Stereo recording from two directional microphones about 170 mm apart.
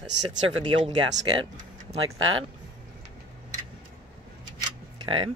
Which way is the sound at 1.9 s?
40° right (ahead or behind).